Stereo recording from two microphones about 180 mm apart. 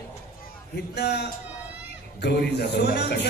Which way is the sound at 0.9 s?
65° left (ahead or behind).